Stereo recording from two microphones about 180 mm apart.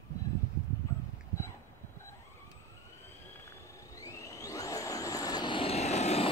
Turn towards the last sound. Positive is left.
turn(degrees=35)  # may be behind; listen again after turning